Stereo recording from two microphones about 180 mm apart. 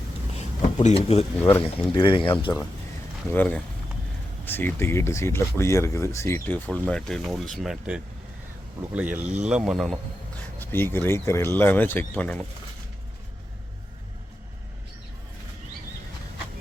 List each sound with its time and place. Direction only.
0.3 s speech: 40° left (ahead or behind)
1.4 s speech: 10° left (ahead or behind)
1.6 s speech: 25° left (ahead or behind); by 10.0 s centre (ahead or behind)
10.6 s speech: 10° left (ahead or behind)